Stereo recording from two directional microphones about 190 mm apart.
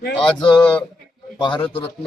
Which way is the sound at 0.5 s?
5° left (ahead or behind).